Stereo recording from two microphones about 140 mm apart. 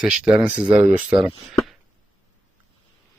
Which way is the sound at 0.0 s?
5° right (ahead or behind).